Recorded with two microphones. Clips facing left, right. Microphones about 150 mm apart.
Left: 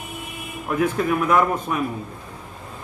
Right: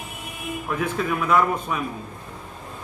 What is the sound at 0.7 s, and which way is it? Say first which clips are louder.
Speech: left 5 dB; 10° left (ahead or behind).